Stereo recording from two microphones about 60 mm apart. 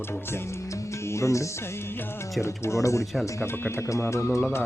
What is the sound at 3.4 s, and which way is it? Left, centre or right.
Speech, left.